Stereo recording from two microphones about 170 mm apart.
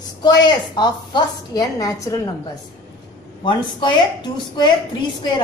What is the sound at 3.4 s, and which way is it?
A woman's voice, 25° left (ahead or behind).